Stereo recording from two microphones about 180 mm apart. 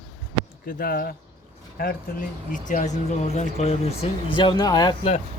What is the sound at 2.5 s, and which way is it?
Speech, 45° left (ahead or behind).